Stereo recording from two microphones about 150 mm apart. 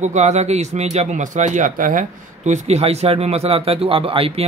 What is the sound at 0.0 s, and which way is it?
A man's voice, 50° right (ahead or behind).